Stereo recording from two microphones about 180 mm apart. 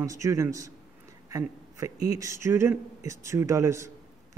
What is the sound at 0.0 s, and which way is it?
A man's voice, 15° right (ahead or behind).